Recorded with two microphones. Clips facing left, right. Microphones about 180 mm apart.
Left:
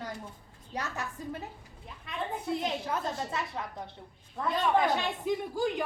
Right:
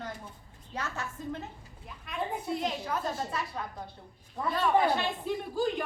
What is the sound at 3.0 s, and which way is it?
A woman's voice, 20° left (ahead or behind).